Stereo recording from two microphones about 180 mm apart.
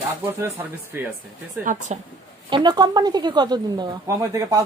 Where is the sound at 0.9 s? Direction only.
15° right (ahead or behind).